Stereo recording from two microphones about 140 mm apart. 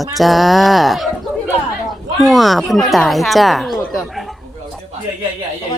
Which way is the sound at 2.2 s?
Centre (ahead or behind).